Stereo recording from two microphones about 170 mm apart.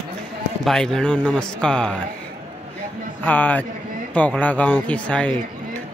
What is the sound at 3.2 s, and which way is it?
A man's voice, 10° left (ahead or behind).